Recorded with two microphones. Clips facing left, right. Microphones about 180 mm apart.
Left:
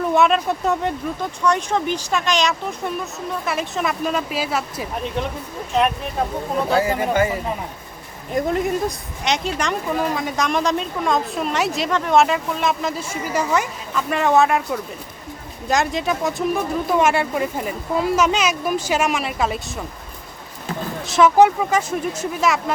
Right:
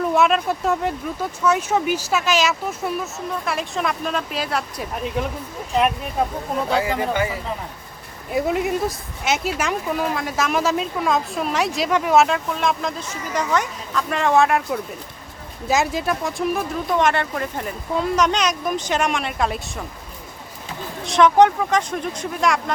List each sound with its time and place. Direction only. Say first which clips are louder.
0.0 s speech: left 1 dB; centre (ahead or behind)
6.8 s speech: left 3 dB; 45° left (ahead or behind)
8.3 s speech: even; 5° right (ahead or behind)
21.0 s speech: even; 5° left (ahead or behind)